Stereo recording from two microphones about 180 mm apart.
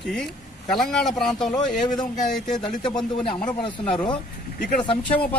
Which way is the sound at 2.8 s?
25° left (ahead or behind).